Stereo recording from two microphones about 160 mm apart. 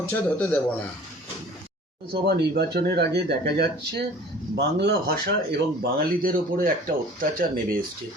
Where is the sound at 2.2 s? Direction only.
90° right.